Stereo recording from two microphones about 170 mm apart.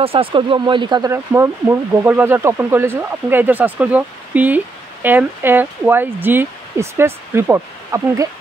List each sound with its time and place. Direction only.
0.0 s speech: 35° right (ahead or behind)
1.1 s speech: 15° right (ahead or behind)